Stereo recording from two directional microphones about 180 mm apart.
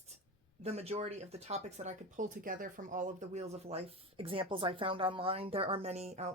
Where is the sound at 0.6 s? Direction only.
35° right (ahead or behind).